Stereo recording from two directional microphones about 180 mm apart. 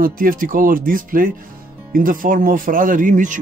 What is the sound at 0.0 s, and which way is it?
Speech, 50° right (ahead or behind).